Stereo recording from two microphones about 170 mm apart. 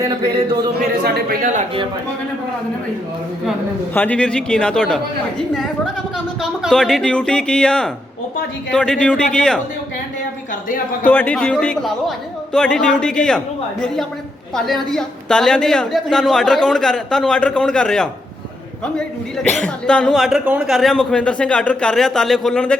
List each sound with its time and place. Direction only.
1.0 s a man's voice: 65° right (ahead or behind)
3.9 s a man's voice: 10° left (ahead or behind)
6.4 s a man's voice: centre (ahead or behind)
11.0 s a man's voice: 10° left (ahead or behind)
14.5 s a man's voice: 5° left (ahead or behind)